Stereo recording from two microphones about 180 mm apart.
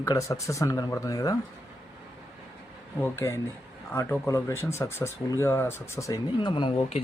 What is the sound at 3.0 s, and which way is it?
Speech, 15° left (ahead or behind).